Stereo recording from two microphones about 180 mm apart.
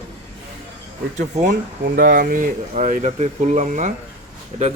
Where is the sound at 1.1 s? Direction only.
45° right (ahead or behind).